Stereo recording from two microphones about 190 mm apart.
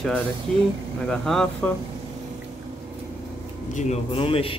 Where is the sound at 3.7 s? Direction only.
30° left (ahead or behind).